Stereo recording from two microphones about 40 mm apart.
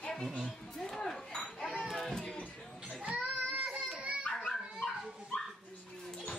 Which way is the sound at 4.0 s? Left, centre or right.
Right.